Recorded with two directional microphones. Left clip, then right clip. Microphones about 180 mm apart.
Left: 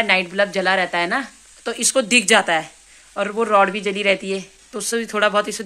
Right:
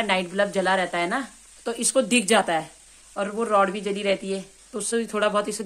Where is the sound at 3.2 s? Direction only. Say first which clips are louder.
Left 5 dB; 35° left (ahead or behind).